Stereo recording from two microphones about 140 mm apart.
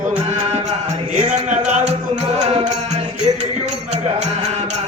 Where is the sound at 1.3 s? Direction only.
60° right (ahead or behind).